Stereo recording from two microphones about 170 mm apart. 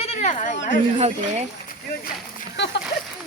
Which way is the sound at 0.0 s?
40° left (ahead or behind).